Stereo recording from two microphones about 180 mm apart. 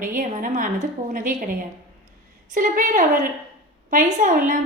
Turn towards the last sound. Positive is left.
turn(degrees=-45)  # may be behind; listen again after turning